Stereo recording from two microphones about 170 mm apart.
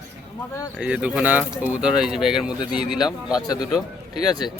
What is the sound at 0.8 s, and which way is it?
Speech, 5° right (ahead or behind).